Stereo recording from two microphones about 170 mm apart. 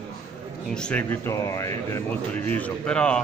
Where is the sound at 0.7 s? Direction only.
5° left (ahead or behind).